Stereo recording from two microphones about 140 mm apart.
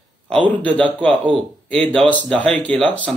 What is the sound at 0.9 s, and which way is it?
A man's voice, 10° left (ahead or behind).